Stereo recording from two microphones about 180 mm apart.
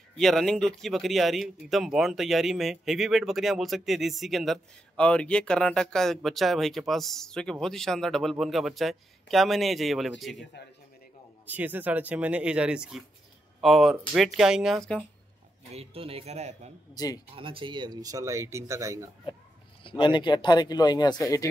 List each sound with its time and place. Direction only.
0.2 s speech: centre (ahead or behind)
11.4 s speech: 10° right (ahead or behind)
15.7 s speech: 35° right (ahead or behind)
16.9 s speech: 20° left (ahead or behind)
17.3 s speech: 30° right (ahead or behind)
19.8 s speech: 25° left (ahead or behind)